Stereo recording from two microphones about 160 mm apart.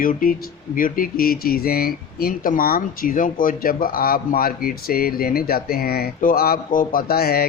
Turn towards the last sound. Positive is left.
turn(degrees=75)  # may be behind; listen again after turning